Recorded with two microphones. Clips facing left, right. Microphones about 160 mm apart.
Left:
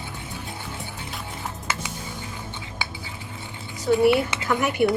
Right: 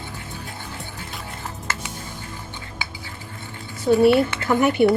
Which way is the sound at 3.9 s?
20° right (ahead or behind).